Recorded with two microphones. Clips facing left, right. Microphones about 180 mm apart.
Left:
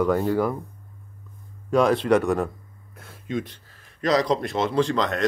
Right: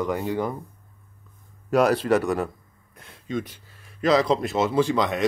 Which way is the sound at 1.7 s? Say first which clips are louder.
Left 1 dB; 5° right (ahead or behind).